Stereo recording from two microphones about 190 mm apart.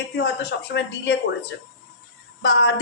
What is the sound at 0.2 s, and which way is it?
A man's voice, 60° left (ahead or behind).